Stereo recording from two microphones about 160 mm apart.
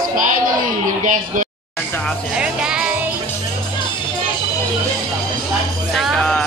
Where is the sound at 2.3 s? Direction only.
5° right (ahead or behind).